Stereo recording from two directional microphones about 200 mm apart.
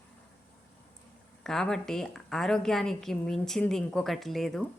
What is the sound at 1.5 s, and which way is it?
A woman's voice, centre (ahead or behind).